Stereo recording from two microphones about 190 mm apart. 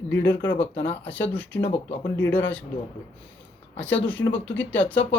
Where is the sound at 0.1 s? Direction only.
70° left (ahead or behind).